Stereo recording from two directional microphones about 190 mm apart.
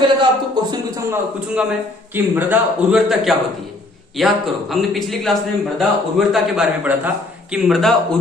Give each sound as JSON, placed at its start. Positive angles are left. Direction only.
{"t": 0.0, "sound": "speech", "side_deg": -20}
{"t": 1.1, "sound": "a man's voice", "side_deg": -5}